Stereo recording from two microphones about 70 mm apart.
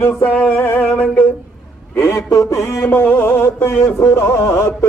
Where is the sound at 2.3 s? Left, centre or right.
Left.